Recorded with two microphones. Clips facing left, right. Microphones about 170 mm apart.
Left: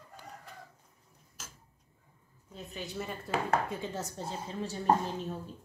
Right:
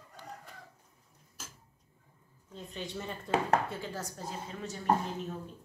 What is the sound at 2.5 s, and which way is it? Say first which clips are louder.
Speech: even; 5° left (ahead or behind).